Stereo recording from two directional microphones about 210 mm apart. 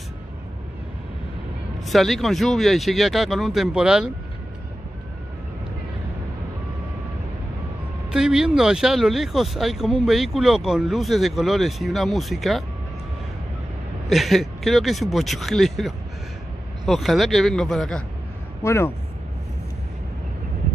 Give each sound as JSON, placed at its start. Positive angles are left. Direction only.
{"t": 1.9, "sound": "speech", "side_deg": 0}
{"t": 8.1, "sound": "speech", "side_deg": -5}
{"t": 14.0, "sound": "speech", "side_deg": 0}
{"t": 18.6, "sound": "speech", "side_deg": 15}